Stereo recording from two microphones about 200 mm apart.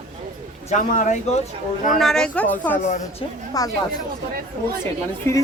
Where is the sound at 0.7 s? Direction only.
40° left (ahead or behind).